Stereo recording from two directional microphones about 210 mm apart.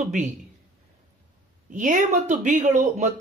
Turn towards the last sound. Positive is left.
turn(degrees=-35)  # may be behind; listen again after turning